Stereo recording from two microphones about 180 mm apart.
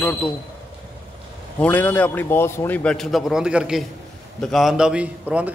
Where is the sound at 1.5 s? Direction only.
10° left (ahead or behind); by 5.4 s 5° right (ahead or behind).